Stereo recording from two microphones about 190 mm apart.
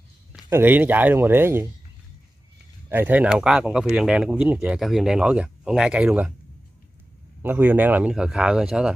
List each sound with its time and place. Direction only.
0.3 s speech: 10° right (ahead or behind)
2.9 s speech: 10° right (ahead or behind)
7.4 s speech: 10° right (ahead or behind)